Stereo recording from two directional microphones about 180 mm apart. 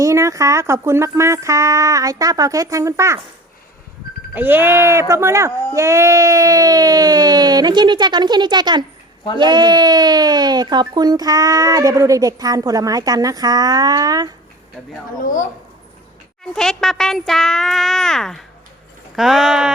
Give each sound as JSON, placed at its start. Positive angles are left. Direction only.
{"t": 0.0, "sound": "speech", "side_deg": -15}
{"t": 4.4, "sound": "speech", "side_deg": -10}
{"t": 15.2, "sound": "speech", "side_deg": 45}
{"t": 16.6, "sound": "speech", "side_deg": 5}